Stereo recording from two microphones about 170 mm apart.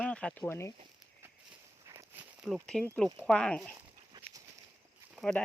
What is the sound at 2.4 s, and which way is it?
Speech, 5° left (ahead or behind).